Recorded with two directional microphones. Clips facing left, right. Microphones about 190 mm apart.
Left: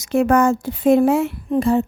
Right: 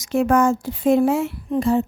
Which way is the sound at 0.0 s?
60° left (ahead or behind).